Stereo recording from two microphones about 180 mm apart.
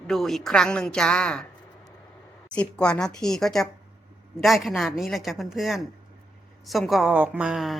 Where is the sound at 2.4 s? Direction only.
5° left (ahead or behind).